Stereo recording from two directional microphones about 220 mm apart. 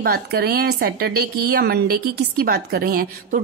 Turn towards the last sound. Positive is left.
turn(degrees=-40)  # may be behind; listen again after turning